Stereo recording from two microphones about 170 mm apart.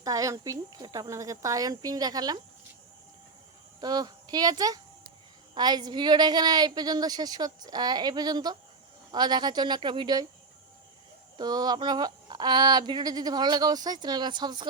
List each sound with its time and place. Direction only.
0.0 s speech: 20° right (ahead or behind)
3.8 s speech: 25° right (ahead or behind)
11.3 s speech: 25° right (ahead or behind)